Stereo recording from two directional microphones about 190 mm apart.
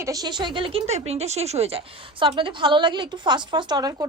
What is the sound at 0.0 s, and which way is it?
Speech, 20° right (ahead or behind).